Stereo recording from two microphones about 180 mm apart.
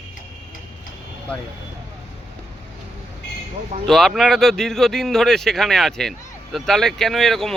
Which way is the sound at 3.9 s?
Centre (ahead or behind).